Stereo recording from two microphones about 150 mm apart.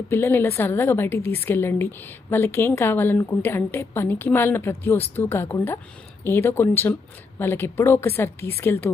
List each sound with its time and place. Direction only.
0.1 s a woman's voice: 15° left (ahead or behind)